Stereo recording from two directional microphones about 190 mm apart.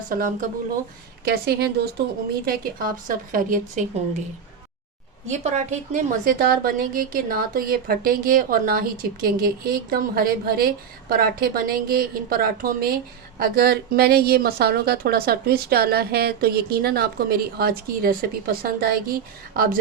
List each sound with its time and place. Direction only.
0.1 s speech: 45° right (ahead or behind)
1.2 s a woman's voice: 55° right (ahead or behind)
5.3 s speech: 35° right (ahead or behind)